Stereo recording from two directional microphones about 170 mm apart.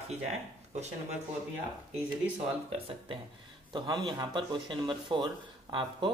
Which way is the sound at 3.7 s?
25° right (ahead or behind).